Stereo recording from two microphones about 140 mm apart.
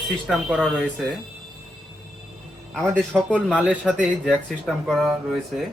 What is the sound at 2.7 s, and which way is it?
Speech, 5° left (ahead or behind).